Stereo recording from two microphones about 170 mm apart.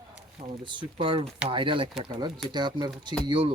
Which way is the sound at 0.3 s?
30° right (ahead or behind).